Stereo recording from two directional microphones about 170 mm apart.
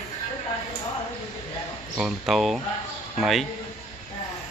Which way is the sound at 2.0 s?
Centre (ahead or behind).